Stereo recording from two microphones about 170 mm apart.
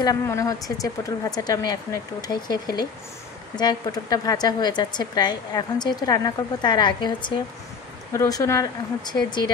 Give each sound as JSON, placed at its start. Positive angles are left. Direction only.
{"t": 0.0, "sound": "a woman's voice", "side_deg": 20}